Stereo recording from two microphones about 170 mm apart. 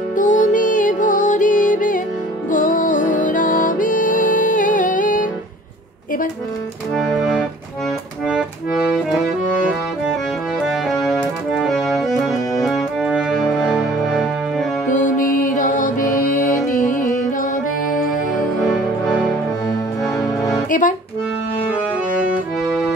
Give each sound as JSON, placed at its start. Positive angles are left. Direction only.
{"t": 0.1, "sound": "music", "side_deg": 45}
{"t": 8.9, "sound": "music", "side_deg": -5}
{"t": 14.9, "sound": "music", "side_deg": 45}
{"t": 15.4, "sound": "mantra", "side_deg": 50}
{"t": 16.7, "sound": "music", "side_deg": 50}
{"t": 18.6, "sound": "music", "side_deg": 0}
{"t": 20.7, "sound": "accordion", "side_deg": 50}
{"t": 22.2, "sound": "music", "side_deg": 0}